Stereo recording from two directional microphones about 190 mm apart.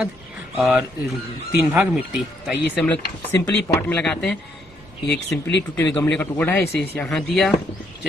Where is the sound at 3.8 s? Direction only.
10° left (ahead or behind).